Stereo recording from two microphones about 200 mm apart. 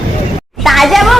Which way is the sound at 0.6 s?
Centre (ahead or behind).